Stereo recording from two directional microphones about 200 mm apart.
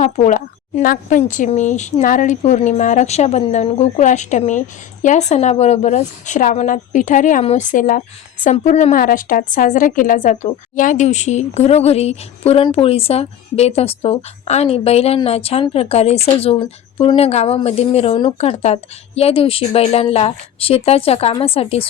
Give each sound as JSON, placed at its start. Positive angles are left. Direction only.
{"t": 0.0, "sound": "speech", "side_deg": 40}